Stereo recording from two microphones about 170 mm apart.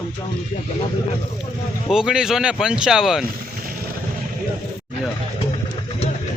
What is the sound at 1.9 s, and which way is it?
Speech, 5° right (ahead or behind).